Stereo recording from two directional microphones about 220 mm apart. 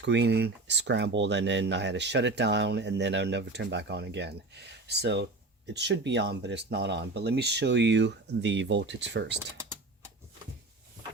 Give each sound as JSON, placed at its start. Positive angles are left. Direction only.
{"t": 0.0, "sound": "speech", "side_deg": -50}